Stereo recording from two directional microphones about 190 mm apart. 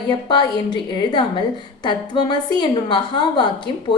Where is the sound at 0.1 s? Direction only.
25° left (ahead or behind).